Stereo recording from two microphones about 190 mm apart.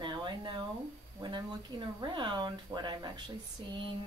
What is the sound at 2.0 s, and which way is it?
Speech, 25° right (ahead or behind).